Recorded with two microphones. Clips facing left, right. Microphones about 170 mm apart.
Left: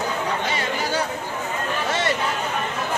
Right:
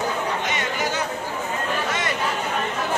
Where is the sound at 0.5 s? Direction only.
30° left (ahead or behind).